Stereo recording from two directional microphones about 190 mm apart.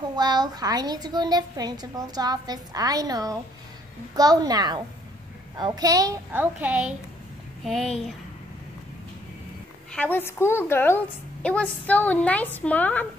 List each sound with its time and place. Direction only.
0.1 s a woman's voice: 20° right (ahead or behind); by 8.2 s centre (ahead or behind)
9.9 s a woman's voice: 10° left (ahead or behind)